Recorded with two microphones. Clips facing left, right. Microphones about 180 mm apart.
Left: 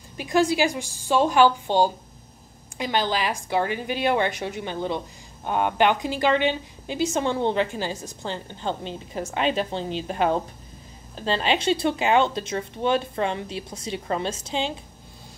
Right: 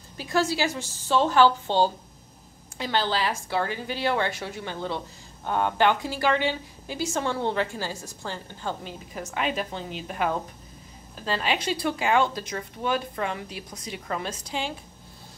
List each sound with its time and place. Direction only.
0.2 s a woman's voice: 15° left (ahead or behind)